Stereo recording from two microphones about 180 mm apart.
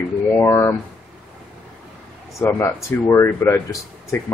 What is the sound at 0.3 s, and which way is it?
Speech, 15° left (ahead or behind).